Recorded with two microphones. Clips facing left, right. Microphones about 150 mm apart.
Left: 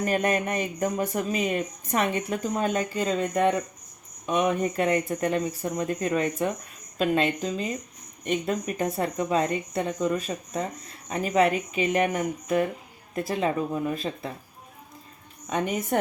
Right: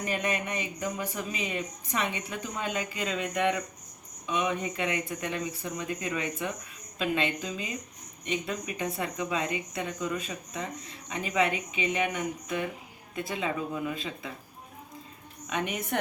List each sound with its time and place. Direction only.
0.0 s a woman's voice: 45° left (ahead or behind)
8.2 s a woman's voice: 50° left (ahead or behind)
15.4 s a woman's voice: 35° left (ahead or behind)